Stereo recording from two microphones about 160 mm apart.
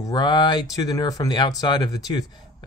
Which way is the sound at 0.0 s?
25° left (ahead or behind).